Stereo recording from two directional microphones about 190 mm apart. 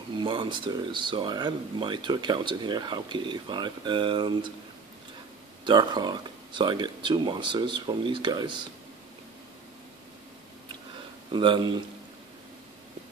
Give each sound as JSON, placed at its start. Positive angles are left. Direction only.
{"t": 0.2, "sound": "speech", "side_deg": -25}
{"t": 5.7, "sound": "speech", "side_deg": -25}
{"t": 11.3, "sound": "speech", "side_deg": -25}